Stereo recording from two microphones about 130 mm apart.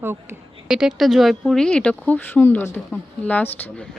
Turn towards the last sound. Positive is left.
turn(degrees=10)  # may be behind; listen again after turning